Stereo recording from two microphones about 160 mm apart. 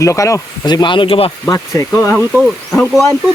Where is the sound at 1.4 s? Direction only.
15° left (ahead or behind).